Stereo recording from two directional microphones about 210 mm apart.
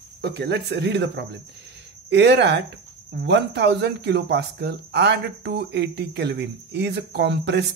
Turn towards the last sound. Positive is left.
turn(degrees=-55)  # may be behind; listen again after turning